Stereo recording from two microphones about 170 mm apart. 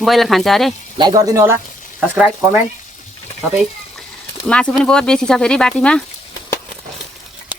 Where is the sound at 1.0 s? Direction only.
20° right (ahead or behind).